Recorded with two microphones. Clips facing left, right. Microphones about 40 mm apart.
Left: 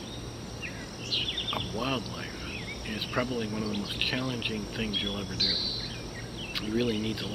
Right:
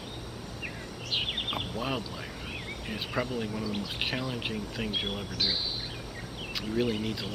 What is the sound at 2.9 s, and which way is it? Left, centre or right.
Speech, centre.